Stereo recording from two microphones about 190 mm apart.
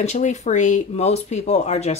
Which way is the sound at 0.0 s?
40° left (ahead or behind).